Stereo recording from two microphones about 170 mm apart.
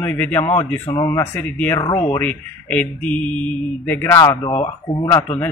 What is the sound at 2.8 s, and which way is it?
Speech, 5° left (ahead or behind).